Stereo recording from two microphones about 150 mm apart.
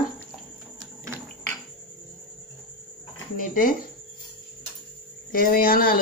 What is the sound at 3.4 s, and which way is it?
Speech, 70° left (ahead or behind).